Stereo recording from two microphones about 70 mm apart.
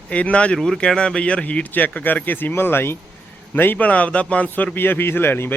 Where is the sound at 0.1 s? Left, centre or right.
Centre.